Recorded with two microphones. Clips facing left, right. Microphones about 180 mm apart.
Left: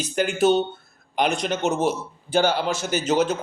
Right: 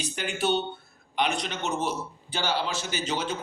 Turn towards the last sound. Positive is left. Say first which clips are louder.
# left 9 dB
turn(degrees=45)  # may be behind; listen again after turning